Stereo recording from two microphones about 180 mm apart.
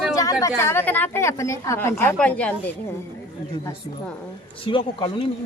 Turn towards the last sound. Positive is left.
turn(degrees=25)  # may be behind; listen again after turning